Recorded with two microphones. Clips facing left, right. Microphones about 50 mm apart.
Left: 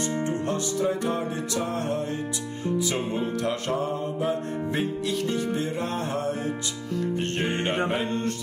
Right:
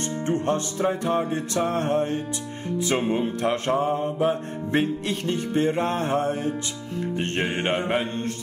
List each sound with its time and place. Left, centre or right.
0.2 s music: right